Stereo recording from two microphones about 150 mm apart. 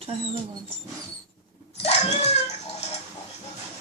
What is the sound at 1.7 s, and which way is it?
Cat, 45° left (ahead or behind).